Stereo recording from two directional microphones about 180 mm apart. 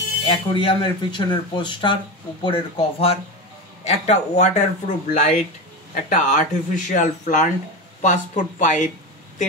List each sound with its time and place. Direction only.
0.2 s speech: 25° left (ahead or behind); by 8.9 s 45° left (ahead or behind)